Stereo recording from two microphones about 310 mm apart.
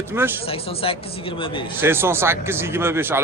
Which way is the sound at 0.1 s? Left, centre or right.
Centre.